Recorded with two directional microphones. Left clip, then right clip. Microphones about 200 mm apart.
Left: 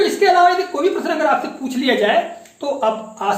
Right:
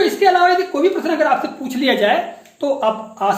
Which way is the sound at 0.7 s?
35° right (ahead or behind).